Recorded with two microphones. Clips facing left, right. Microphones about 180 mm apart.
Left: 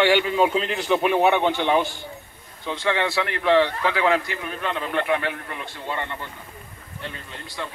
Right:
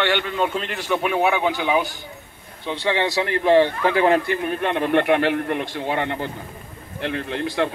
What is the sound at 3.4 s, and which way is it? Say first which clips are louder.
A man's voice: right 3 dB; 45° right (ahead or behind).